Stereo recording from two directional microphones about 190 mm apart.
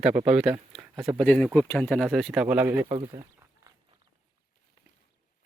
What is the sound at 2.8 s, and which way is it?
Speech, 25° right (ahead or behind).